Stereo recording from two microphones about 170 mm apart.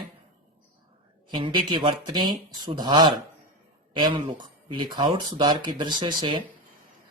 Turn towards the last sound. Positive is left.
turn(degrees=-30)  # may be behind; listen again after turning